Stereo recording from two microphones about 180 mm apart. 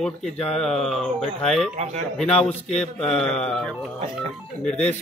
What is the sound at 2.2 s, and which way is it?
A man's voice, 5° left (ahead or behind).